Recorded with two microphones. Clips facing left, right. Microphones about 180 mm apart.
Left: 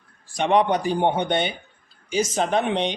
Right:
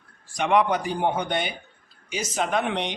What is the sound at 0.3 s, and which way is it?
Speech, 25° left (ahead or behind).